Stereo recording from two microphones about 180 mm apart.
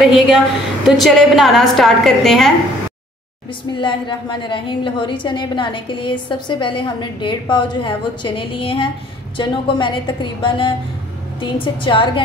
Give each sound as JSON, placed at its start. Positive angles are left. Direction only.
{"t": 0.0, "sound": "a woman's voice", "side_deg": 0}
{"t": 3.7, "sound": "a woman's voice", "side_deg": 25}